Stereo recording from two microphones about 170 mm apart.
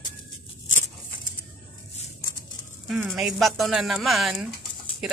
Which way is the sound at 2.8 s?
Centre (ahead or behind).